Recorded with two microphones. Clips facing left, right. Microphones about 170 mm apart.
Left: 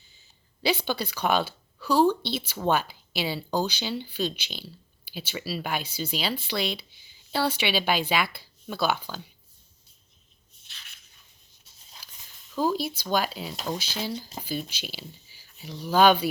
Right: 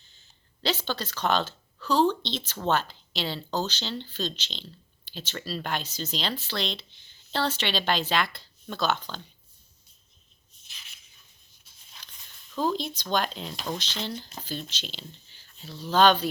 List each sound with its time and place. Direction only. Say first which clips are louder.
0.1 s speech: left 1 dB; 10° left (ahead or behind)
11.9 s speech: left 1 dB; 5° left (ahead or behind)